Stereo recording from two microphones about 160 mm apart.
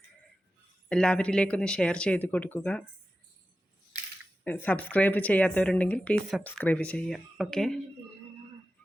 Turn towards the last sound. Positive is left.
turn(degrees=5)  # may be behind; listen again after turning